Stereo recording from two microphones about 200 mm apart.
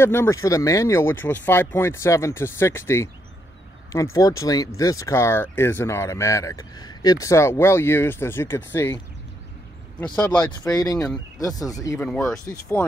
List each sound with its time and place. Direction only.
0.0 s speech: 10° left (ahead or behind)
10.7 s speech: 15° left (ahead or behind)
12.0 s speech: 5° left (ahead or behind)